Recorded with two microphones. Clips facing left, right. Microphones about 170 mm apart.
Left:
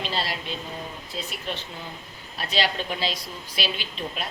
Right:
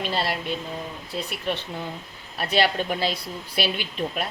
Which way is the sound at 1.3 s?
60° right (ahead or behind).